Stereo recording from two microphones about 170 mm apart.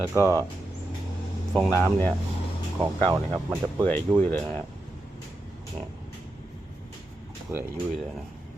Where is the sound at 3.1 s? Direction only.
15° right (ahead or behind).